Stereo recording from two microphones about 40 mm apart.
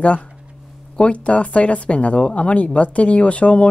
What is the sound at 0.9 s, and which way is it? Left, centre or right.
Speech, left.